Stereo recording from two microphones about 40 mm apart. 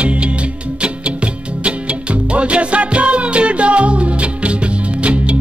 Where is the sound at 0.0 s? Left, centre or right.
Right.